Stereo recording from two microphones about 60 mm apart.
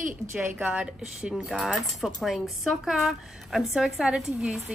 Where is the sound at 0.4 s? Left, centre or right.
Right.